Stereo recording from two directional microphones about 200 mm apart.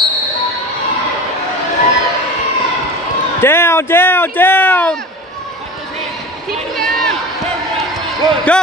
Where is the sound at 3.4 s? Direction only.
10° left (ahead or behind).